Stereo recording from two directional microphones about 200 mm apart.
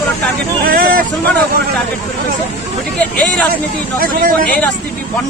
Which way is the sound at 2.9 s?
5° left (ahead or behind).